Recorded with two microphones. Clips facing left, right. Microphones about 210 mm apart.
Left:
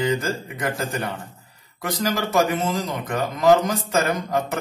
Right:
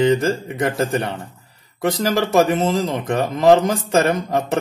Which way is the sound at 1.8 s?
30° right (ahead or behind).